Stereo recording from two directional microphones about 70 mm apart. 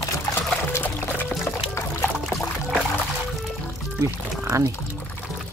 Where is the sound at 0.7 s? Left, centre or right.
Left.